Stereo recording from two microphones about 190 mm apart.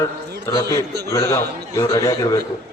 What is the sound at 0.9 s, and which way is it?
Speech, 60° right (ahead or behind).